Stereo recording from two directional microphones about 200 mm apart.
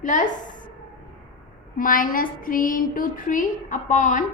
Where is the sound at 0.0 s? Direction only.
40° left (ahead or behind).